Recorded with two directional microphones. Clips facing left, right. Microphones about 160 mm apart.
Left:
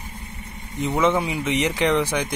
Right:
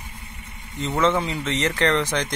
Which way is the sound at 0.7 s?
15° left (ahead or behind).